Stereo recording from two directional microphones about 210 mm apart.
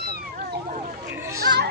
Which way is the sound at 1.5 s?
50° right (ahead or behind).